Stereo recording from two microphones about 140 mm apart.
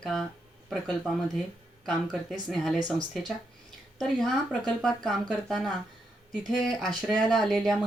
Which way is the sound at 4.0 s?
Centre (ahead or behind).